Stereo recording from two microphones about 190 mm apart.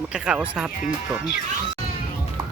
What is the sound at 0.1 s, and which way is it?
Speech, 5° right (ahead or behind).